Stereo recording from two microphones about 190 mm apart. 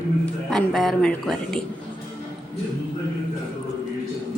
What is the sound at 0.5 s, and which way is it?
A woman's voice, centre (ahead or behind).